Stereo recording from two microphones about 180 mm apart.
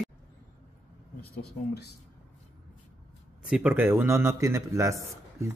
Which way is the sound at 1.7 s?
65° left (ahead or behind).